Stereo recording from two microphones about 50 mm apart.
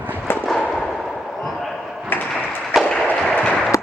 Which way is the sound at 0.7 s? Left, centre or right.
Centre.